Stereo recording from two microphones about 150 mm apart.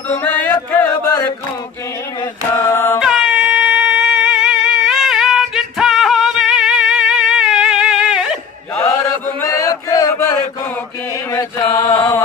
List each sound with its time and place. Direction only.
0.2 s music: 10° left (ahead or behind)
2.5 s chant: 15° left (ahead or behind)
3.0 s a sound: 5° right (ahead or behind)
8.7 s chant: 20° left (ahead or behind)